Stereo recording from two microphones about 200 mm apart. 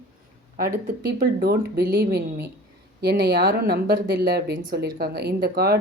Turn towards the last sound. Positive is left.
turn(degrees=-50)  # may be behind; listen again after turning